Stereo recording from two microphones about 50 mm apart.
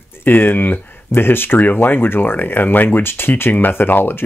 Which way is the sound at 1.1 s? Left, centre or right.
Left.